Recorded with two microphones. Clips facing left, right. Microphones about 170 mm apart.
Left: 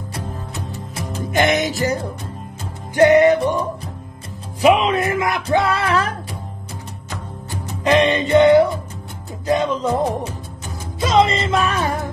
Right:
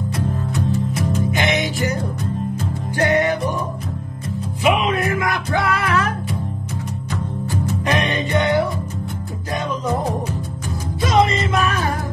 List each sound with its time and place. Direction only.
0.6 s music: 25° left (ahead or behind)
1.3 s music: 45° left (ahead or behind)
3.0 s music: 25° left (ahead or behind)
4.9 s music: 25° left (ahead or behind)
7.8 s music: 25° left (ahead or behind)